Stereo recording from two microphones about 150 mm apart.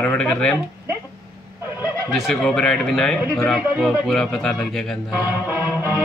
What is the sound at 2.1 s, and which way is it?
Speech, centre (ahead or behind).